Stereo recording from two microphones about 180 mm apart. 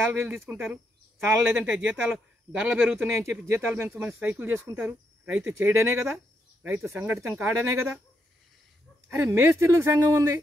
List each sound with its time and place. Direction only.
0.1 s a man's voice: 10° right (ahead or behind)
9.1 s a man's voice: 10° right (ahead or behind)